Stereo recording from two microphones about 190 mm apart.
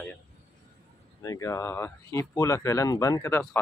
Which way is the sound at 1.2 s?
15° left (ahead or behind).